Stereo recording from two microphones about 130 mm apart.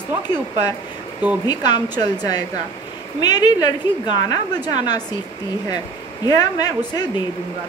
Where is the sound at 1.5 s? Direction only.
30° left (ahead or behind).